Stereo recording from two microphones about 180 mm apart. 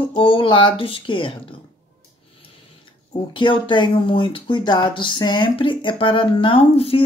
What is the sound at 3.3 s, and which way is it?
Speech, 25° left (ahead or behind).